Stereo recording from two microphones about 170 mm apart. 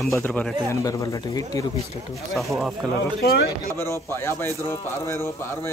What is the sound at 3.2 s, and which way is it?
Speech, 70° left (ahead or behind).